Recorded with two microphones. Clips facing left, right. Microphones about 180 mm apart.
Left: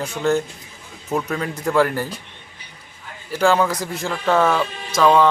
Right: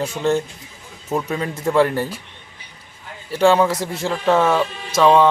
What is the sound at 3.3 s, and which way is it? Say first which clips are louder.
Speech: right 3 dB; centre (ahead or behind).